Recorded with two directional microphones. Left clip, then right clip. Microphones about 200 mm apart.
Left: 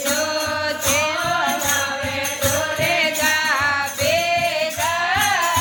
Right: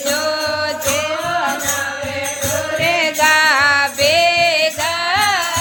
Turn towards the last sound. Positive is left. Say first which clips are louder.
# right 6 dB
turn(degrees=-45)  # may be behind; listen again after turning